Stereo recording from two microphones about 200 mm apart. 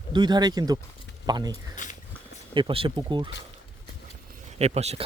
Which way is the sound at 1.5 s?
40° left (ahead or behind).